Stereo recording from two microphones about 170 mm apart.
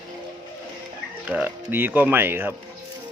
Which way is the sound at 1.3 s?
10° right (ahead or behind).